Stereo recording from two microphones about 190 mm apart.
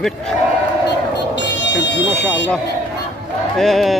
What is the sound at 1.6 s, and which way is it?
Speech, 70° left (ahead or behind).